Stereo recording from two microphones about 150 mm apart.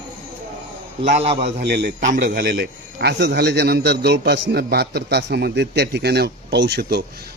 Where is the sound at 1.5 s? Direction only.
90° right.